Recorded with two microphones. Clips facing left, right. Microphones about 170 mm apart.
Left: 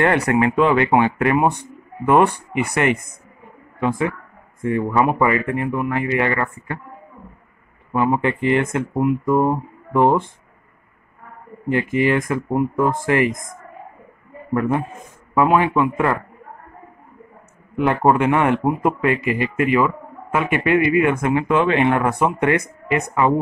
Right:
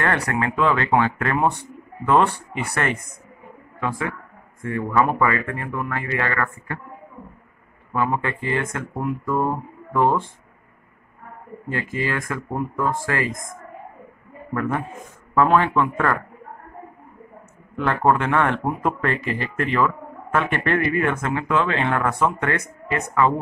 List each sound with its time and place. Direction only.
0.0 s speech: 20° left (ahead or behind)
4.6 s speech: 20° left (ahead or behind)
7.9 s speech: 20° left (ahead or behind)
11.7 s speech: 20° left (ahead or behind)
14.5 s a man's voice: 20° left (ahead or behind)
17.7 s speech: 15° left (ahead or behind)